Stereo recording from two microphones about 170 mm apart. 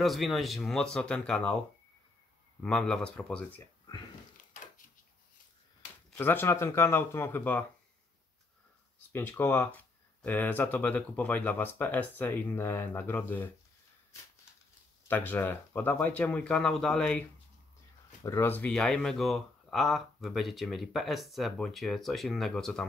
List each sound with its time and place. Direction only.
0.0 s speech: centre (ahead or behind)
2.6 s speech: 5° left (ahead or behind)
4.4 s wood: 50° left (ahead or behind)
6.1 s speech: 15° left (ahead or behind)
9.1 s speech: 10° left (ahead or behind)
15.0 s speech: 10° left (ahead or behind)
18.2 s speech: 15° left (ahead or behind)